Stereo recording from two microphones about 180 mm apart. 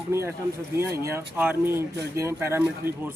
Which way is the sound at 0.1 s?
15° right (ahead or behind).